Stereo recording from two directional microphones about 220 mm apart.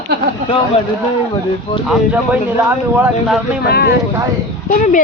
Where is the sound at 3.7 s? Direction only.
45° left (ahead or behind).